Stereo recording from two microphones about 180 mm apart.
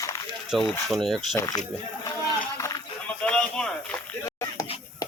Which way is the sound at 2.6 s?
20° left (ahead or behind).